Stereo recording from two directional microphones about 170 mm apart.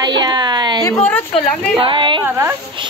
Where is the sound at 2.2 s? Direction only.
15° right (ahead or behind).